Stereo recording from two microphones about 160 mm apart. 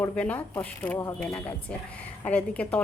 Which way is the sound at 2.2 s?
10° left (ahead or behind).